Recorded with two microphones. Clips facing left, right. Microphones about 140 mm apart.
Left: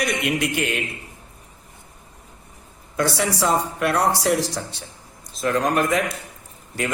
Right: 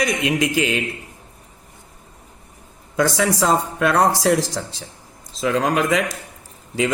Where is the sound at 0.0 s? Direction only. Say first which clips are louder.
Right 3 dB; 90° right.